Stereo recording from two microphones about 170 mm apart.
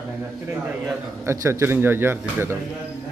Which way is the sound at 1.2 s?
15° right (ahead or behind).